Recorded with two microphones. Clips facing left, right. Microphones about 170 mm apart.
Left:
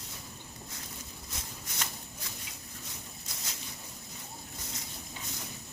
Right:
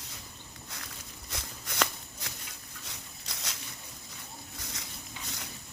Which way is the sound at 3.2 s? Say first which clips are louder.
Right 5 dB; 80° right.